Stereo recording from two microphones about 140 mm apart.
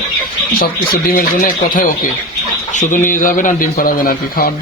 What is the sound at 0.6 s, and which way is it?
Speech, 90° left.